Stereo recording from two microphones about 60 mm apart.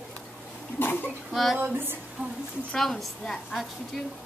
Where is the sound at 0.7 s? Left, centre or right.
Left.